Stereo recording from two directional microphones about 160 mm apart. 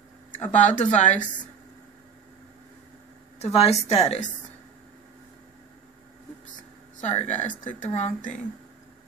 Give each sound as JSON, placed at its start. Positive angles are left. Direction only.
{"t": 0.4, "sound": "speech", "side_deg": 50}
{"t": 3.5, "sound": "a woman's voice", "side_deg": 40}
{"t": 7.0, "sound": "speech", "side_deg": 45}